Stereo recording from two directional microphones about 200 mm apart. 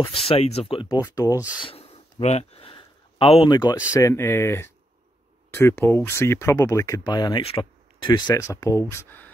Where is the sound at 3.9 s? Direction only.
15° left (ahead or behind).